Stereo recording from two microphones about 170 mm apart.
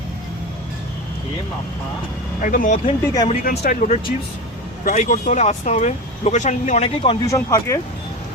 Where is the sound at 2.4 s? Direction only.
50° left (ahead or behind).